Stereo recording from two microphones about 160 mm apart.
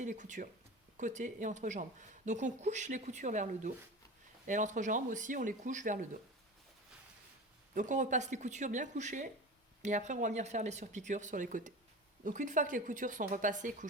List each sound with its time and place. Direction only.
0.0 s a woman's voice: 50° right (ahead or behind)
7.7 s a woman's voice: 50° right (ahead or behind)